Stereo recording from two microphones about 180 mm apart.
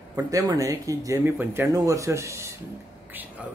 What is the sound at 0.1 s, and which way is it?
Speech, 20° right (ahead or behind).